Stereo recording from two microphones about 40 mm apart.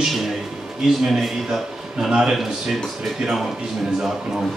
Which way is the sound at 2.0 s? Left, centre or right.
Right.